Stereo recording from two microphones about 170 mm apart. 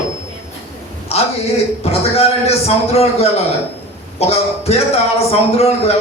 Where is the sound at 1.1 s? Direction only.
35° left (ahead or behind).